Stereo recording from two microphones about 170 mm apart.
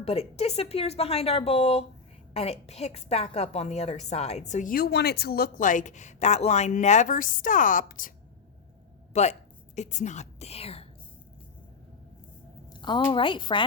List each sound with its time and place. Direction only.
0.0 s a woman's voice: 35° left (ahead or behind); by 8.1 s 55° left (ahead or behind)
9.1 s a woman's voice: 40° left (ahead or behind)
12.8 s a woman's voice: 30° left (ahead or behind)